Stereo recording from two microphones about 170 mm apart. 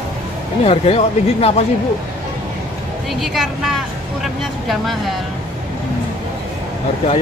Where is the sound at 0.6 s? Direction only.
35° left (ahead or behind).